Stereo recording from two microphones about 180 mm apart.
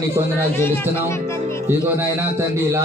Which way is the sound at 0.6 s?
15° left (ahead or behind).